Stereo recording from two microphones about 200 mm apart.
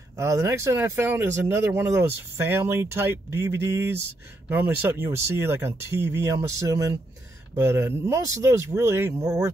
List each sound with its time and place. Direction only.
0.1 s speech: 15° right (ahead or behind)